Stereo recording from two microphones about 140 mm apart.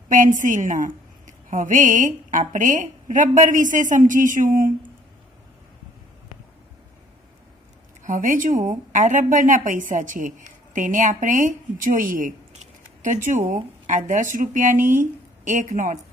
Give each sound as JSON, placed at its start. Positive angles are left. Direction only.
{"t": 0.1, "sound": "a woman's voice", "side_deg": -70}
{"t": 8.0, "sound": "a woman's voice", "side_deg": -70}
{"t": 13.0, "sound": "speech", "side_deg": -65}